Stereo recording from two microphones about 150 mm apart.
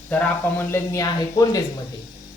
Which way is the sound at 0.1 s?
10° left (ahead or behind).